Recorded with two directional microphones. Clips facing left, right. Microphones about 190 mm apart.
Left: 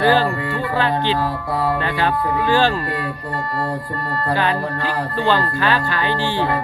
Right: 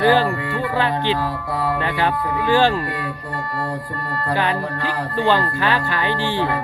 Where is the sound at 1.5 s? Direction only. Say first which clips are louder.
Left 2 dB; 30° left (ahead or behind).